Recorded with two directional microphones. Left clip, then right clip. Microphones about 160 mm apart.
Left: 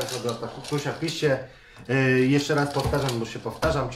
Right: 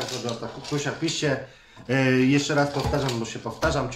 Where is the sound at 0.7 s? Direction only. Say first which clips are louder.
Right 2 dB; 10° right (ahead or behind).